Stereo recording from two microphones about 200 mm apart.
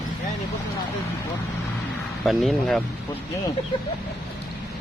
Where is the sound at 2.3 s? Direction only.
Centre (ahead or behind).